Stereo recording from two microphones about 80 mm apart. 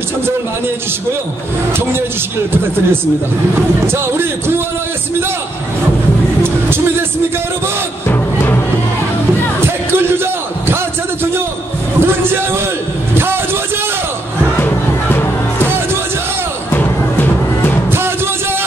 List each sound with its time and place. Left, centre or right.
3.8 s speech: right
6.4 s music: right
9.9 s a sound: right
12.0 s a sound: right
13.1 s vehicle: right
14.6 s music: left
16.7 s music: left
17.9 s music: right